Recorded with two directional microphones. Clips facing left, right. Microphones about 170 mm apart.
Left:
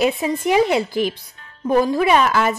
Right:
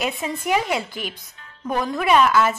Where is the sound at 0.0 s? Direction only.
35° left (ahead or behind).